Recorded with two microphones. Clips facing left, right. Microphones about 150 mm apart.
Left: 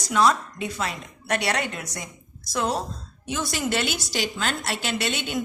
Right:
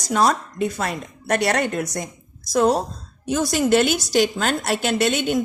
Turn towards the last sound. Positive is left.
turn(degrees=-50)  # may be behind; listen again after turning